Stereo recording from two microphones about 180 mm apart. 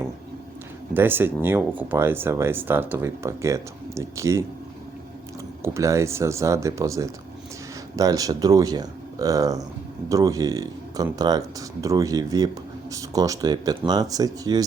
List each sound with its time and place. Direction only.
0.9 s speech: 10° right (ahead or behind)
5.6 s speech: 15° right (ahead or behind)